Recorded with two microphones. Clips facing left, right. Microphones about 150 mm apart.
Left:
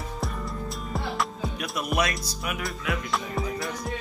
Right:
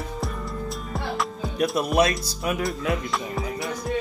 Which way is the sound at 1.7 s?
30° right (ahead or behind).